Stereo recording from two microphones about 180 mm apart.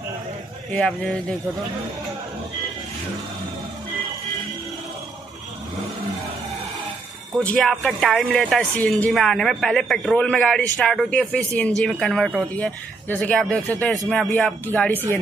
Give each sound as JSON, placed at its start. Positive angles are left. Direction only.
{"t": 0.7, "sound": "speech", "side_deg": 5}
{"t": 7.3, "sound": "speech", "side_deg": 5}